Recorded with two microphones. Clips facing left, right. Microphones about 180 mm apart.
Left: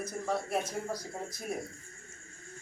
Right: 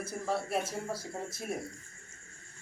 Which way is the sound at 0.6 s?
30° right (ahead or behind).